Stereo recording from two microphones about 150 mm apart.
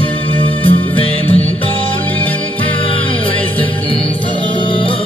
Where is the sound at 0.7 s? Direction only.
40° left (ahead or behind).